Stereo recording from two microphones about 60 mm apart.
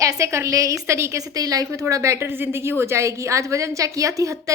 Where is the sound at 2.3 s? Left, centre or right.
Right.